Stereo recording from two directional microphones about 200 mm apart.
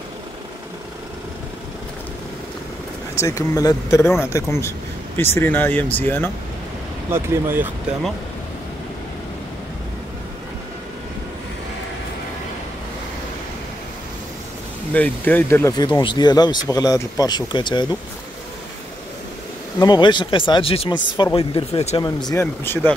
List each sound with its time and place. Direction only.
3.2 s speech: 15° left (ahead or behind)
7.1 s speech: 10° right (ahead or behind)
14.9 s speech: 10° left (ahead or behind)
19.8 s speech: 20° left (ahead or behind)
22.3 s speech: 10° left (ahead or behind)